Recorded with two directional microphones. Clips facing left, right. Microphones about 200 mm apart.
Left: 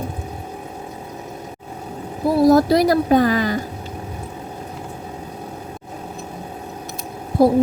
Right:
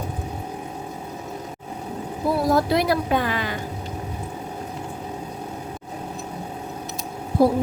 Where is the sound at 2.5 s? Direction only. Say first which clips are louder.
Left 6 dB; 40° left (ahead or behind).